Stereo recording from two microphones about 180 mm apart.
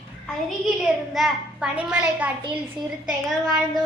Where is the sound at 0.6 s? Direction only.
Centre (ahead or behind).